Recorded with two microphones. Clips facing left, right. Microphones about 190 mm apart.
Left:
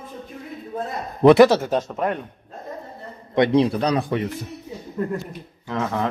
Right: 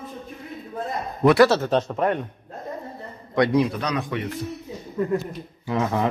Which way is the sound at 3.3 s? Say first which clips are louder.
Left 2 dB; 25° left (ahead or behind).